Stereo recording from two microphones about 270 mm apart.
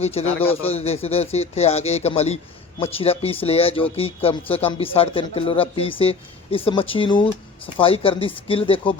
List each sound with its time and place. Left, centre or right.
0.0 s speech: left